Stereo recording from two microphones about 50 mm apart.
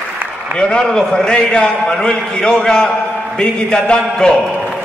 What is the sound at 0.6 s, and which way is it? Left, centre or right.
A man's voice, centre.